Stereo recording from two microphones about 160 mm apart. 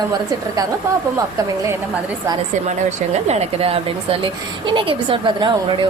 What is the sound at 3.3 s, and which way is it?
A woman's voice, 40° right (ahead or behind).